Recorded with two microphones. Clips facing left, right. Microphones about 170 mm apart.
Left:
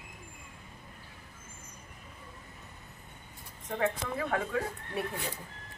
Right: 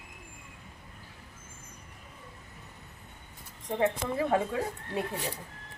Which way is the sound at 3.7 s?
20° right (ahead or behind).